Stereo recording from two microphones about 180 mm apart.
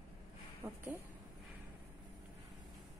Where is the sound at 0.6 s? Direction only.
15° right (ahead or behind).